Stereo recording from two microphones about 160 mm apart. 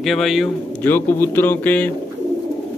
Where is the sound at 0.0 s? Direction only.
Centre (ahead or behind).